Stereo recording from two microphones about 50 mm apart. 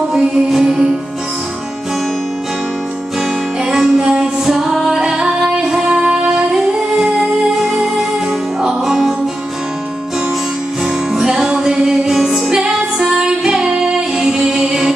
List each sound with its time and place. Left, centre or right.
0.1 s music: centre
3.7 s music: centre
4.0 s music: right
4.5 s music: centre
7.0 s music: centre
11.1 s music: centre